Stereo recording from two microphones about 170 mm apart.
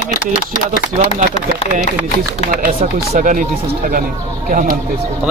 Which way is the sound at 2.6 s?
50° right (ahead or behind).